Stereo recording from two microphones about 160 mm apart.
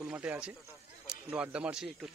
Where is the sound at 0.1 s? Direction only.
10° right (ahead or behind).